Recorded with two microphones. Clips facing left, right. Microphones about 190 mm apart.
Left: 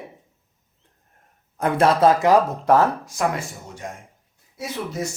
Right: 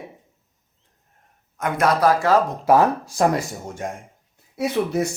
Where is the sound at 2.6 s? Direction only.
10° right (ahead or behind).